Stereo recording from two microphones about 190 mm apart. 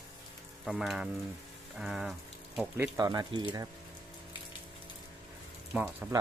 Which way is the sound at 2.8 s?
20° right (ahead or behind).